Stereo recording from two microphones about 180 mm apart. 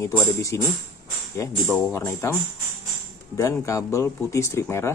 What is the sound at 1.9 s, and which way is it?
Speech, 15° left (ahead or behind).